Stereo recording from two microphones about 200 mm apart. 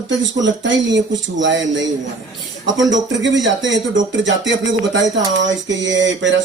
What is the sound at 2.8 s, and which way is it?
Speech, 65° right (ahead or behind).